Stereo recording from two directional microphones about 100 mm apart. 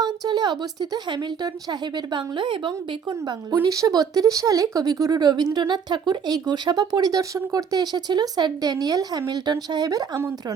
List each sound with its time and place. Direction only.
0.0 s a woman's voice: 45° right (ahead or behind)
3.2 s speech: 40° right (ahead or behind)